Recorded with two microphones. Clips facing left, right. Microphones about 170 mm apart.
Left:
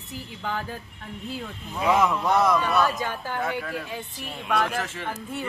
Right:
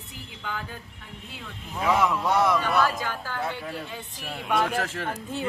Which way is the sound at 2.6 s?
20° left (ahead or behind).